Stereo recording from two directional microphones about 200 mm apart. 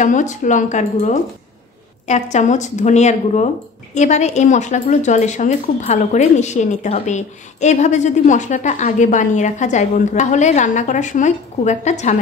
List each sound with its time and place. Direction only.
0.0 s a woman's voice: 40° left (ahead or behind)